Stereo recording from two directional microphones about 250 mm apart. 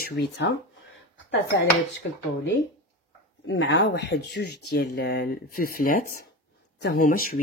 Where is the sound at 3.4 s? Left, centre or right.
Left.